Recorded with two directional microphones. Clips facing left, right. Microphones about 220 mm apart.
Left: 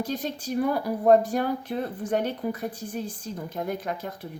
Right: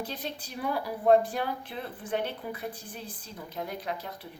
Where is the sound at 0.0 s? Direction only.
45° left (ahead or behind).